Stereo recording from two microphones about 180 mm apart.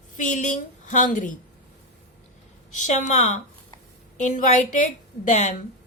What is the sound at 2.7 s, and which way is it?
A woman's voice, 40° left (ahead or behind).